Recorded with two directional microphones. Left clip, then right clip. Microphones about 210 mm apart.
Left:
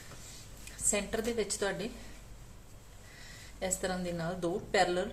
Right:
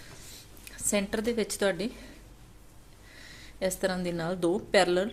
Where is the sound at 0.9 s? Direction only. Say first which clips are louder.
Right 4 dB; 50° right (ahead or behind).